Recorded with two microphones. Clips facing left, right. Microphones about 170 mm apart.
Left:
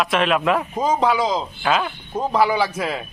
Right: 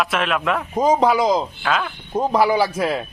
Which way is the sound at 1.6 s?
5° left (ahead or behind).